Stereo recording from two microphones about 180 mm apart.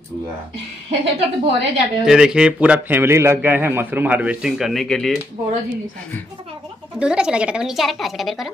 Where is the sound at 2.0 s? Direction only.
5° right (ahead or behind).